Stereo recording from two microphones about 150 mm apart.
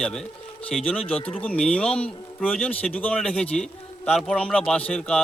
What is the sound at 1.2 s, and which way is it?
Speech, 40° left (ahead or behind).